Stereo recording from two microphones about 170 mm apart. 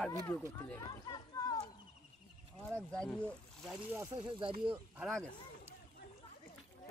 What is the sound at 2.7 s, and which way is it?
Speech, 5° left (ahead or behind).